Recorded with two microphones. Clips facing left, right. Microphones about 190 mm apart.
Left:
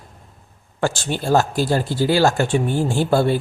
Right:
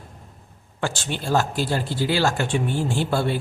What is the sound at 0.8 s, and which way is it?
Speech, 45° left (ahead or behind).